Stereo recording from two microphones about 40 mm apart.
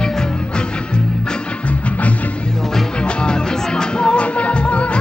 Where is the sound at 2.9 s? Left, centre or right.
Left.